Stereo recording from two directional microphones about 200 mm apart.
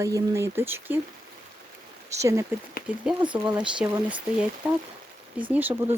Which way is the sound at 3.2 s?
25° right (ahead or behind).